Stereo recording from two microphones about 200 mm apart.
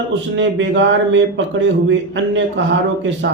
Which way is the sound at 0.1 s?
70° right (ahead or behind).